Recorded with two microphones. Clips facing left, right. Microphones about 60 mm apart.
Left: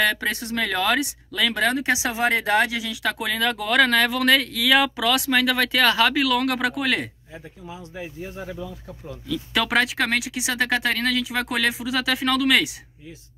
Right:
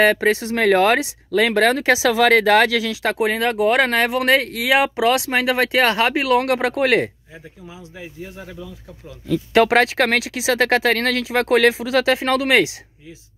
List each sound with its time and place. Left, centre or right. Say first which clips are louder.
0.0 s speech: right 7 dB; right
1.8 s speech: right 7 dB; right
3.0 s speech: right 2 dB; right
7.9 s speech: left 1 dB; centre
9.3 s speech: right 8 dB; right